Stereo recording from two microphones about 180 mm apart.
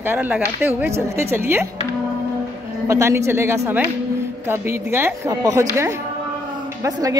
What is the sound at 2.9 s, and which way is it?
A woman's voice, 15° right (ahead or behind).